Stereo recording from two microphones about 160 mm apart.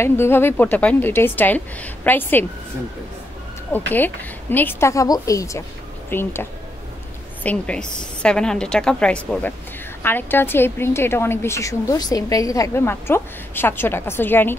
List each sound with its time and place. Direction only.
0.0 s a woman's voice: 15° left (ahead or behind)
3.9 s a woman's voice: 10° left (ahead or behind)
7.4 s a woman's voice: 5° left (ahead or behind)